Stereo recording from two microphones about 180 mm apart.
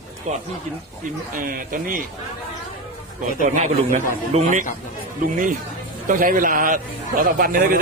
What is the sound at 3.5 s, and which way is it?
A man's voice, 45° right (ahead or behind).